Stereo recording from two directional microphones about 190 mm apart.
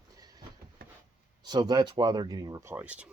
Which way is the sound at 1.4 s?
20° right (ahead or behind).